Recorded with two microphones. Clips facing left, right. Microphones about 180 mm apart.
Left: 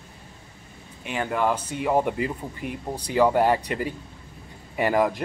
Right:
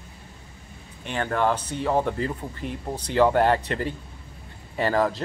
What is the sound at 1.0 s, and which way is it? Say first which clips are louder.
Speech: right 1 dB; 10° left (ahead or behind).